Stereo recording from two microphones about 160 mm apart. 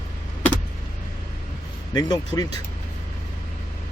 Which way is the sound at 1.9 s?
25° left (ahead or behind).